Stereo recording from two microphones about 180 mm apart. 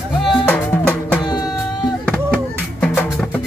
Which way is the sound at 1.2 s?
25° left (ahead or behind).